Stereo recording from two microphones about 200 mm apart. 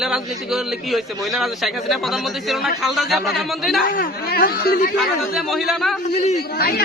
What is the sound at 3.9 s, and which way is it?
Speech, 45° left (ahead or behind).